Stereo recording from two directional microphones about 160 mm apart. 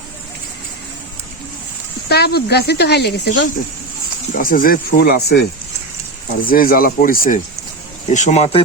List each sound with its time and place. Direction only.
2.0 s speech: 85° left
4.4 s speech: 60° left (ahead or behind); by 5.5 s 80° left
6.4 s speech: 60° left (ahead or behind)
8.1 s speech: 45° left (ahead or behind)